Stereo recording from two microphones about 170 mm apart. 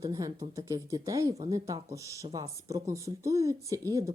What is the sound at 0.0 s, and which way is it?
Speech, 20° right (ahead or behind).